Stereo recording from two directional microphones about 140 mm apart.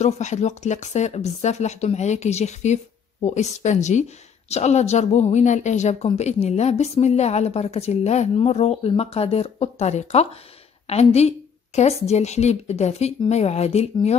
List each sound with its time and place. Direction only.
0.0 s speech: 55° left (ahead or behind)